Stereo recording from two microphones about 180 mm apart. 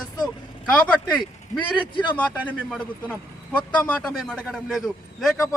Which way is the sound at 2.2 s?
5° left (ahead or behind).